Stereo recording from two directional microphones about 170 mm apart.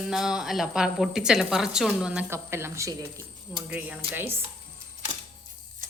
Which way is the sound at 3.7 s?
10° right (ahead or behind).